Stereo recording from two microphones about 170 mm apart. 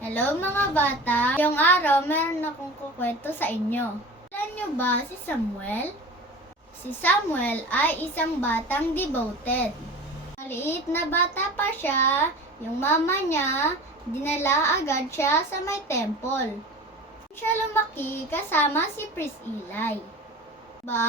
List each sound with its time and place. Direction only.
0.0 s a woman's voice: 10° left (ahead or behind)
7.0 s a woman's voice: 10° left (ahead or behind)
17.9 s a woman's voice: 15° left (ahead or behind)